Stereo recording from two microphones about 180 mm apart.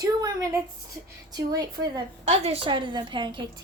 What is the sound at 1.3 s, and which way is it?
Speech, 20° right (ahead or behind).